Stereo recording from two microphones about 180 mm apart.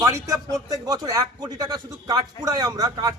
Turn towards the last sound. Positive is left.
turn(degrees=-20)  # may be behind; listen again after turning